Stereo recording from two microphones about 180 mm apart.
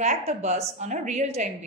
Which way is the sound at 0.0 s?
40° right (ahead or behind).